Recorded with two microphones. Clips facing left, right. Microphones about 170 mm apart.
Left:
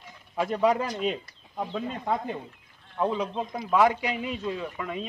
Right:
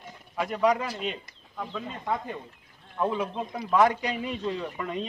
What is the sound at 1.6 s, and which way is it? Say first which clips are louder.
A man's voice: left 4 dB; 25° left (ahead or behind).